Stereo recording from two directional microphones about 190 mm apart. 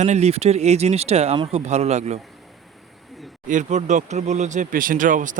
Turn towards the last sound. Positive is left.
turn(degrees=-45)  # may be behind; listen again after turning